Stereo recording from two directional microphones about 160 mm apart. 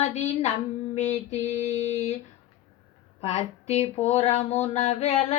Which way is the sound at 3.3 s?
45° left (ahead or behind).